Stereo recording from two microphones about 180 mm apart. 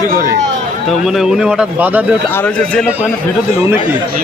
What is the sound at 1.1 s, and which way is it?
Speech, centre (ahead or behind).